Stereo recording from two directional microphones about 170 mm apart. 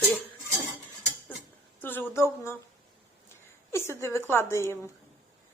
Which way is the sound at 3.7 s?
15° left (ahead or behind).